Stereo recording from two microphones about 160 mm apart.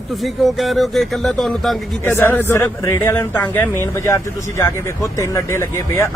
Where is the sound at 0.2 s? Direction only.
Centre (ahead or behind).